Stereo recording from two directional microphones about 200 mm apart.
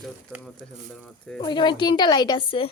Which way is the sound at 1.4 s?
20° left (ahead or behind).